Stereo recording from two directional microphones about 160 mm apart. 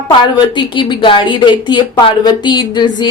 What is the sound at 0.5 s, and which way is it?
A woman's voice, 30° left (ahead or behind).